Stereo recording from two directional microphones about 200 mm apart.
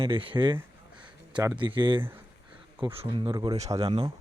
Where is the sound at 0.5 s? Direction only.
5° right (ahead or behind).